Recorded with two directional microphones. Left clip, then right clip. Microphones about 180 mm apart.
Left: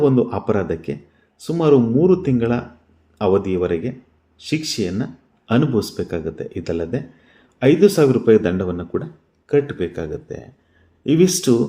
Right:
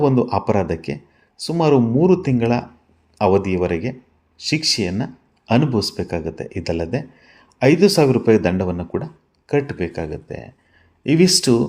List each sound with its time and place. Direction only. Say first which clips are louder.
0.0 s speech: even; 30° right (ahead or behind)